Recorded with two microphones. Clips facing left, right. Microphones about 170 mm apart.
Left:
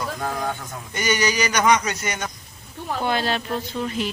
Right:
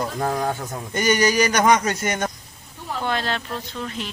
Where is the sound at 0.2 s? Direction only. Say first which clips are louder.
Right 4 dB; 35° right (ahead or behind).